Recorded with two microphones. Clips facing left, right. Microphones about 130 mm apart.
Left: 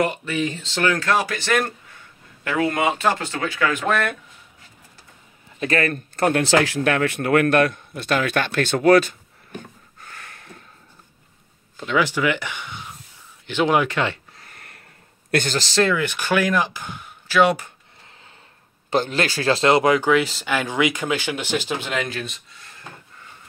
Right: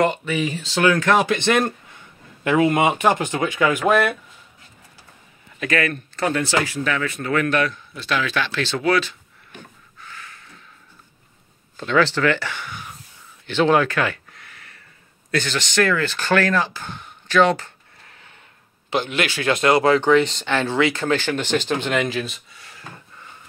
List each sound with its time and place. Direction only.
0.1 s speech: centre (ahead or behind)
5.6 s speech: 35° left (ahead or behind)
6.1 s speech: 50° left (ahead or behind)
6.4 s a man's voice: 90° left; by 10.6 s 55° left (ahead or behind)
11.7 s speech: 10° left (ahead or behind); by 14.5 s 25° left (ahead or behind)
14.5 s a sound: 50° left (ahead or behind)
15.5 s speech: 30° left (ahead or behind)
15.9 s speech: 15° left (ahead or behind)
18.9 s speech: 40° left (ahead or behind); by 22.6 s centre (ahead or behind)